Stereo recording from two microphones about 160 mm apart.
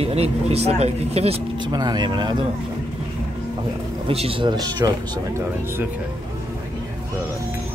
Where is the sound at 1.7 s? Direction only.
25° right (ahead or behind).